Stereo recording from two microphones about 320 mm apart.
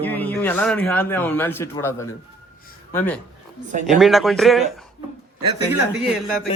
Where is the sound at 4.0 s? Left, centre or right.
Centre.